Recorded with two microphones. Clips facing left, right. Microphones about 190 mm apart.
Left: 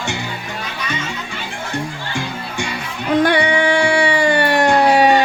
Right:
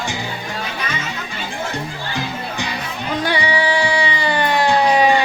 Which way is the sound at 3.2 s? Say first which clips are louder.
Left 3 dB; 55° left (ahead or behind).